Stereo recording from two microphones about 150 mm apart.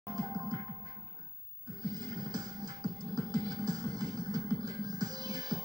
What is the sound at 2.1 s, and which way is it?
Music, 25° right (ahead or behind).